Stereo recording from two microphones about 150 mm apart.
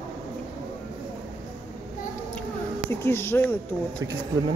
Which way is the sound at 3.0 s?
15° left (ahead or behind).